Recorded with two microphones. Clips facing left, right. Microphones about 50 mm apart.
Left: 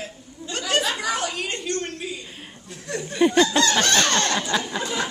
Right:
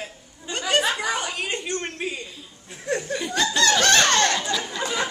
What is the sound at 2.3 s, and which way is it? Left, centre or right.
Chuckle, left.